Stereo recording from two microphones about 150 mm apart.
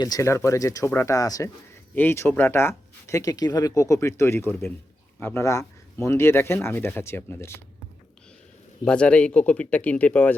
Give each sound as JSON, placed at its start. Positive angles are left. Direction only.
{"t": 0.0, "sound": "speech", "side_deg": 25}
{"t": 8.8, "sound": "speech", "side_deg": 5}